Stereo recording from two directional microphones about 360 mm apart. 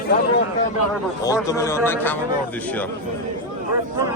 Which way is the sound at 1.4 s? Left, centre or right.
Centre.